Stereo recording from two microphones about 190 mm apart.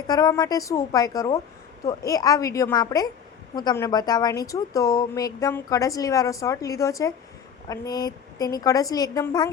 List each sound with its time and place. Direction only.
0.1 s a woman's voice: 20° left (ahead or behind)